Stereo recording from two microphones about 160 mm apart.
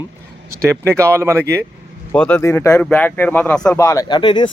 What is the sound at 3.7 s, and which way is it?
Speech, 20° left (ahead or behind).